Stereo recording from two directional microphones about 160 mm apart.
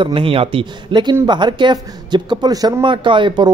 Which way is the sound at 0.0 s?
35° right (ahead or behind).